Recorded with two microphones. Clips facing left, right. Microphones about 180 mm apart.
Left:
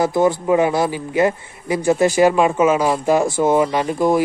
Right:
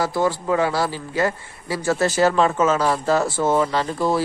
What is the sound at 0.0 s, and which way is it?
A man's voice, 20° left (ahead or behind).